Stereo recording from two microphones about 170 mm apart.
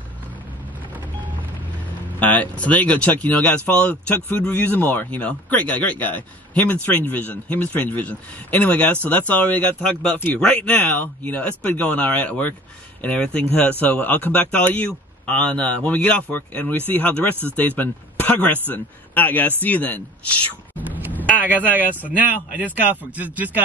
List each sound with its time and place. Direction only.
2.1 s speech: 10° left (ahead or behind)
20.9 s a sound: 10° right (ahead or behind)
21.6 s speech: 10° right (ahead or behind)